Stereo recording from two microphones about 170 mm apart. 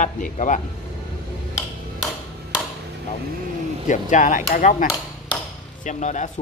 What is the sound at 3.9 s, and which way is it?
Speech, 45° left (ahead or behind).